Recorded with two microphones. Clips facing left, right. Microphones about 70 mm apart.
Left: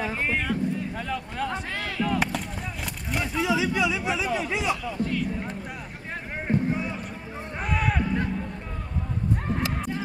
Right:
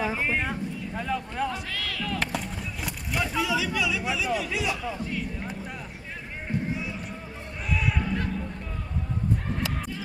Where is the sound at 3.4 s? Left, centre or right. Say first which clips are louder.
Left 4 dB; left.